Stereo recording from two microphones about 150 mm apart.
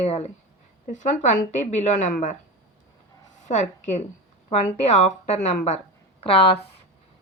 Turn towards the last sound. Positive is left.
turn(degrees=40)  # may be behind; listen again after turning